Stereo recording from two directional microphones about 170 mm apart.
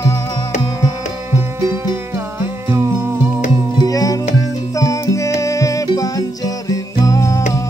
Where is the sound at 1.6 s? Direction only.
15° right (ahead or behind).